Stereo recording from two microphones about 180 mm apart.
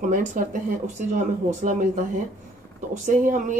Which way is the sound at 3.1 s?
45° right (ahead or behind).